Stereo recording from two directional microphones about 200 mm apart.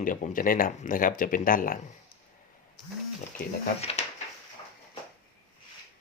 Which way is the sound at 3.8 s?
30° left (ahead or behind).